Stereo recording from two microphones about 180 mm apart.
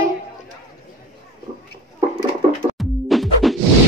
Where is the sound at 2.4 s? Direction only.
35° right (ahead or behind).